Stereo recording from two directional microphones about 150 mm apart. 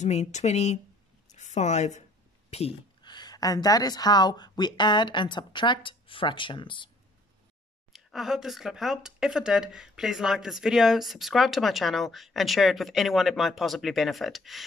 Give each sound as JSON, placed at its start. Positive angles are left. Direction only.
{"t": 0.0, "sound": "a woman's voice", "side_deg": 50}
{"t": 3.0, "sound": "speech", "side_deg": 30}
{"t": 7.9, "sound": "speech", "side_deg": 0}